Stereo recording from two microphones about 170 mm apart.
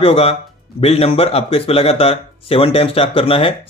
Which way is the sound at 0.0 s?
35° left (ahead or behind).